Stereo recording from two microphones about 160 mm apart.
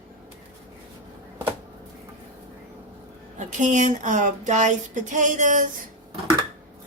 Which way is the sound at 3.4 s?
50° right (ahead or behind).